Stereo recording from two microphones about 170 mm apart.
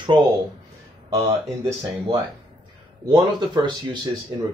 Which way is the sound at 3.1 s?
25° right (ahead or behind).